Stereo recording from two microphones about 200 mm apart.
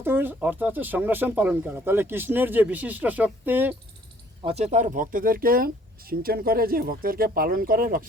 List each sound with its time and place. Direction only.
0.0 s speech: 10° right (ahead or behind)
4.4 s speech: 35° right (ahead or behind)